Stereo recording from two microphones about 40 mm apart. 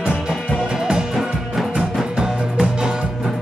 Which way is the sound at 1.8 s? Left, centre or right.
Right.